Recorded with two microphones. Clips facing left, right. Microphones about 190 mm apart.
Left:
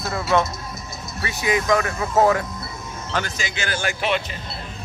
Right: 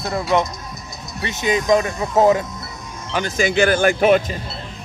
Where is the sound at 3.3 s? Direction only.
55° right (ahead or behind).